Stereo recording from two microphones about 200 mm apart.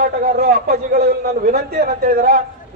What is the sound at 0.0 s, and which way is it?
A man's voice, 50° right (ahead or behind).